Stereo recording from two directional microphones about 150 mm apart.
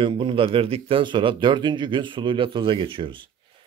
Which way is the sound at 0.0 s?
35° right (ahead or behind).